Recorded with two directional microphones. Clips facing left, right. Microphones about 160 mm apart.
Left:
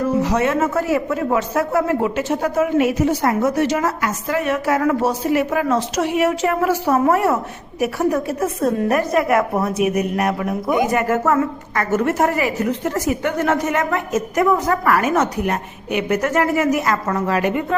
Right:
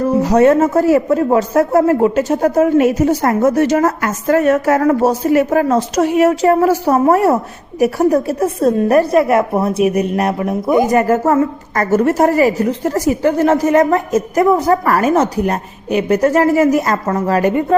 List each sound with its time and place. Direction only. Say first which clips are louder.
0.2 s a woman's voice: right 7 dB; 40° right (ahead or behind)